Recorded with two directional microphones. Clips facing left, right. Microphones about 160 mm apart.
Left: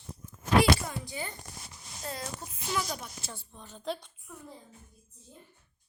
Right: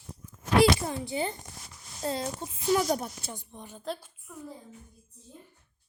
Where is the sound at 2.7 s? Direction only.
45° right (ahead or behind).